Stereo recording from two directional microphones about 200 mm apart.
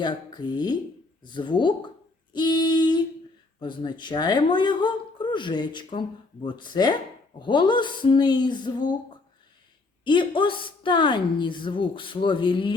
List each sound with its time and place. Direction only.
0.0 s speech: 20° left (ahead or behind)
2.3 s female singing: 20° left (ahead or behind)
3.6 s speech: 25° left (ahead or behind)
10.0 s speech: 25° left (ahead or behind)